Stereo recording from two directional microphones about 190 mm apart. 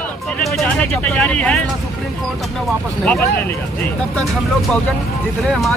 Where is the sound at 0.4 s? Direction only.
5° left (ahead or behind).